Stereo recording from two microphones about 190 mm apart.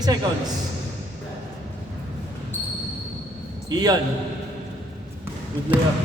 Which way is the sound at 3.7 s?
20° right (ahead or behind).